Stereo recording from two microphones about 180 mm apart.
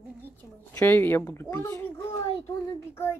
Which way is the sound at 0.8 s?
10° left (ahead or behind).